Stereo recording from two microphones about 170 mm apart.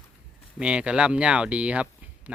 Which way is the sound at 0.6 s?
5° right (ahead or behind).